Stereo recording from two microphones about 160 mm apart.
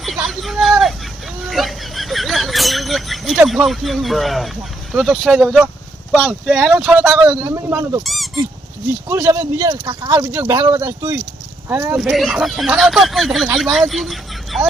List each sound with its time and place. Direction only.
0.3 s hubbub: centre (ahead or behind)
1.5 s a sound: centre (ahead or behind)
6.1 s speech: centre (ahead or behind)
7.3 s speech: 20° right (ahead or behind)
8.0 s a sound: centre (ahead or behind)
9.0 s speech: 15° right (ahead or behind)
10.1 s speech: 15° right (ahead or behind); by 14.7 s centre (ahead or behind)